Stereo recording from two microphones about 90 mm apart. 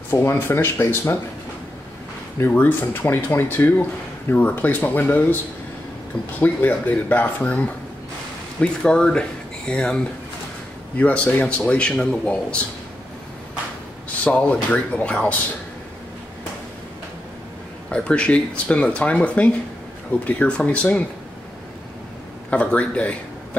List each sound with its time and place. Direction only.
0.1 s speech: 25° left (ahead or behind)
2.3 s speech: 25° left (ahead or behind)
6.4 s a man's voice: 15° left (ahead or behind)
14.2 s a man's voice: 15° left (ahead or behind)
17.9 s a man's voice: 10° left (ahead or behind)
22.5 s a man's voice: 15° left (ahead or behind)